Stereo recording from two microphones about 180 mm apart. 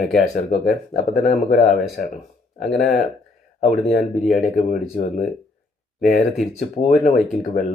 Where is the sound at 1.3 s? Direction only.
45° left (ahead or behind).